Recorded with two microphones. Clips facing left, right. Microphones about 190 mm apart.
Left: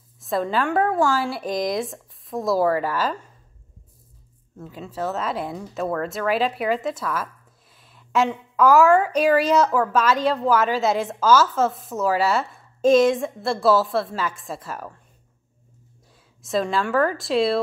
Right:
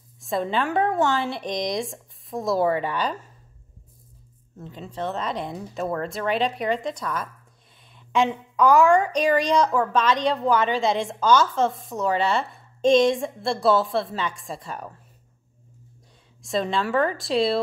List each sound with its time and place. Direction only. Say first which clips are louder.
0.2 s a woman's voice: left 2 dB; centre (ahead or behind)
4.6 s a woman's voice: left 2 dB; 5° left (ahead or behind)
7.9 s a sound: left 1 dB; 5° left (ahead or behind)
8.5 s a woman's voice: left 2 dB; 5° left (ahead or behind)
16.4 s a woman's voice: left 2 dB; centre (ahead or behind)